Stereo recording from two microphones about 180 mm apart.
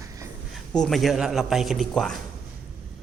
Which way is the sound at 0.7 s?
5° left (ahead or behind).